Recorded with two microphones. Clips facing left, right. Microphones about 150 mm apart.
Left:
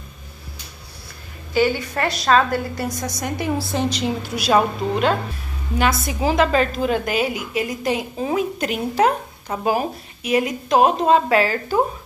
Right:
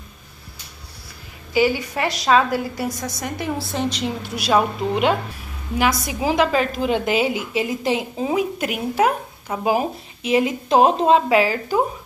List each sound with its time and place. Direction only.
1.5 s a woman's voice: 10° right (ahead or behind)
5.8 s a woman's voice: 10° right (ahead or behind)
8.3 s a woman's voice: 10° right (ahead or behind)
10.2 s a woman's voice: 25° right (ahead or behind)
11.1 s a woman's voice: 15° right (ahead or behind)